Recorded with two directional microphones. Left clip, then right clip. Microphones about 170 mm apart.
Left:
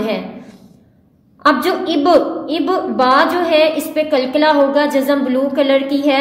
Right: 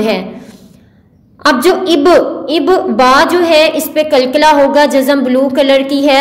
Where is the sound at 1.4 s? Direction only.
35° right (ahead or behind).